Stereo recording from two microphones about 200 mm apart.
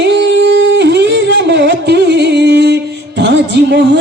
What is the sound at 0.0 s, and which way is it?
Singing, 60° right (ahead or behind).